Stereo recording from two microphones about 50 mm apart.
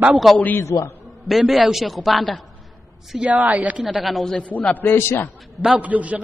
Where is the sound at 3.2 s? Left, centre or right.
Right.